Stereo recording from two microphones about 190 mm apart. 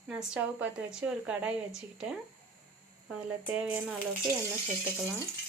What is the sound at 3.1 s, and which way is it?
Speech, 5° right (ahead or behind).